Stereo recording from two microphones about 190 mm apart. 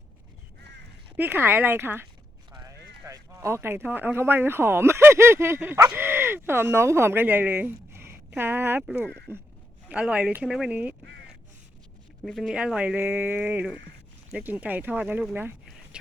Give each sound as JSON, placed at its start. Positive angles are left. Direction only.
{"t": 1.1, "sound": "speech", "side_deg": -10}
{"t": 2.5, "sound": "a sound", "side_deg": -20}
{"t": 3.1, "sound": "speech", "side_deg": -15}
{"t": 9.0, "sound": "speech", "side_deg": 5}
{"t": 9.9, "sound": "speech", "side_deg": -5}
{"t": 12.2, "sound": "speech", "side_deg": 0}